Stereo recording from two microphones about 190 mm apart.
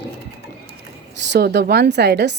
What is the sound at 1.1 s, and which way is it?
A woman's voice, 65° right (ahead or behind).